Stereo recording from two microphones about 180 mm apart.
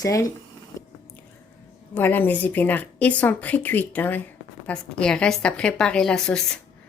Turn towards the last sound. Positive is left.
turn(degrees=5)  # may be behind; listen again after turning